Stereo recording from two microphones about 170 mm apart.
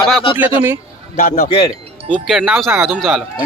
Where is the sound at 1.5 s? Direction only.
35° left (ahead or behind).